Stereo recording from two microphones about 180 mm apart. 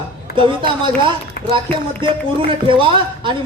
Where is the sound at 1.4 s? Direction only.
65° left (ahead or behind).